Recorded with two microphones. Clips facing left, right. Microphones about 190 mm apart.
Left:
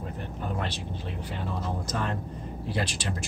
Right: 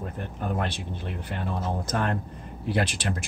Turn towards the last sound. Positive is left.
turn(degrees=-55)  # may be behind; listen again after turning